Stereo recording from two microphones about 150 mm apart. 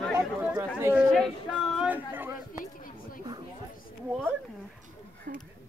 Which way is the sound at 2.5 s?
65° left (ahead or behind).